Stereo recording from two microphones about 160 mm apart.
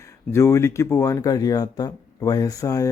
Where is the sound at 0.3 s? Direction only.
15° left (ahead or behind).